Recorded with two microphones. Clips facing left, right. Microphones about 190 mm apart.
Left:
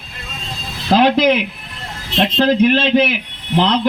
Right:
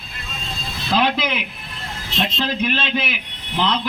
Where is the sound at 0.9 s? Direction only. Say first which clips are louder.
Left 7 dB; 65° left (ahead or behind).